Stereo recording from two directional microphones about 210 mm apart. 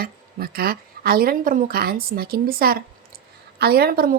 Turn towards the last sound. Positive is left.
turn(degrees=-45)  # may be behind; listen again after turning